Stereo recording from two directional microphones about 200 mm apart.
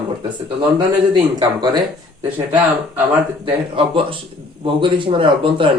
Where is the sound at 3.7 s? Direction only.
25° right (ahead or behind).